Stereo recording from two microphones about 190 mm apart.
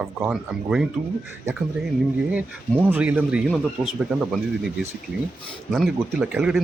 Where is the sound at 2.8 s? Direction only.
10° right (ahead or behind).